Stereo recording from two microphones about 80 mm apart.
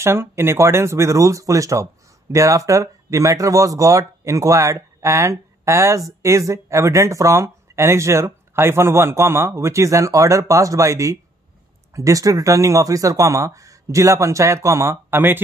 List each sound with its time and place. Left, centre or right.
0.0 s speech: right